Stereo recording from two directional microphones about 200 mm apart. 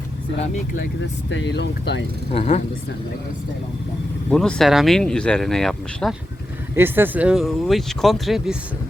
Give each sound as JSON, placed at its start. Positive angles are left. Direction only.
{"t": 0.8, "sound": "speech", "side_deg": 60}
{"t": 2.3, "sound": "speech", "side_deg": 30}
{"t": 4.3, "sound": "speech", "side_deg": 5}
{"t": 6.7, "sound": "speech", "side_deg": -10}